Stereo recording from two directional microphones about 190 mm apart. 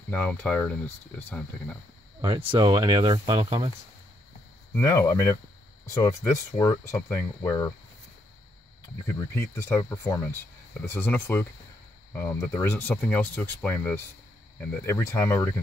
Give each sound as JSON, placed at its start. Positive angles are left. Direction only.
{"t": 0.1, "sound": "speech", "side_deg": 10}
{"t": 2.2, "sound": "speech", "side_deg": -20}
{"t": 4.7, "sound": "speech", "side_deg": 15}
{"t": 9.0, "sound": "speech", "side_deg": 15}